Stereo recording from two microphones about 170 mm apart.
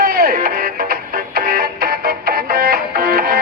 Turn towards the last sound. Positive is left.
turn(degrees=-60)  # may be behind; listen again after turning